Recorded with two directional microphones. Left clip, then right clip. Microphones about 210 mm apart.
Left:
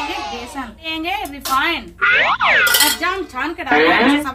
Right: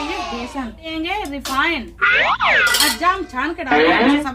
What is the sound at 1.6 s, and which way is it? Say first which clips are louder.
Speech: right 2 dB; centre (ahead or behind).